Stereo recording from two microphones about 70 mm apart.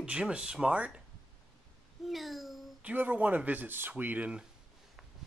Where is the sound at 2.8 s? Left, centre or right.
Right.